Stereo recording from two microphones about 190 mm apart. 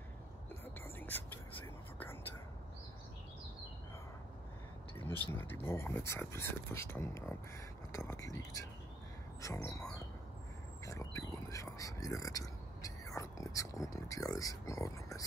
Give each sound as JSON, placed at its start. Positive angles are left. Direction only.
{"t": 0.9, "sound": "whispering", "side_deg": 10}
{"t": 4.9, "sound": "a sound", "side_deg": 10}
{"t": 5.3, "sound": "speech", "side_deg": 10}